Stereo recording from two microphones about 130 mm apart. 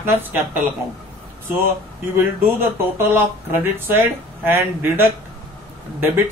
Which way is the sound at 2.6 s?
15° right (ahead or behind).